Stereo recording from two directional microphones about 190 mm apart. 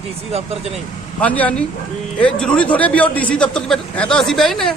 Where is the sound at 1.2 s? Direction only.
5° left (ahead or behind).